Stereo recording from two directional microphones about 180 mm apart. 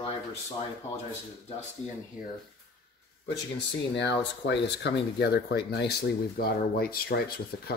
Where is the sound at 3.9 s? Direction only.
75° left (ahead or behind); by 7.2 s 60° left (ahead or behind).